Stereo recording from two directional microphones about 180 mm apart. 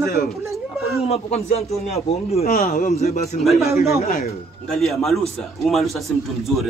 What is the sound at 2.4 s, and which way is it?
Speech, 50° left (ahead or behind).